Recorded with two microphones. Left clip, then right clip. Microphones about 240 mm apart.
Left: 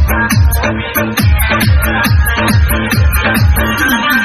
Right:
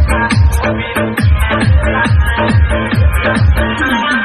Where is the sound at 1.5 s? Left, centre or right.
Left.